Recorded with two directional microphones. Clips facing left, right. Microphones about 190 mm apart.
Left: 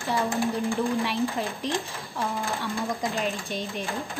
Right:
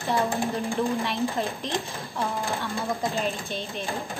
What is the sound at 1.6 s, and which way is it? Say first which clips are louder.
Speech: left 1 dB; 10° left (ahead or behind).